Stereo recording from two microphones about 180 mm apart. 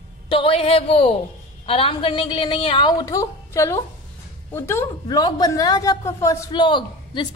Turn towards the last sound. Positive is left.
turn(degrees=25)  # may be behind; listen again after turning